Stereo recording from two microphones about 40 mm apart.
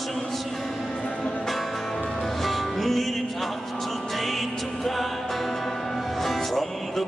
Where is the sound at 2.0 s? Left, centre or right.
Left.